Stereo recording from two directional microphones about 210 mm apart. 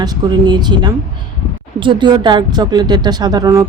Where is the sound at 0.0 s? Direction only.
20° right (ahead or behind).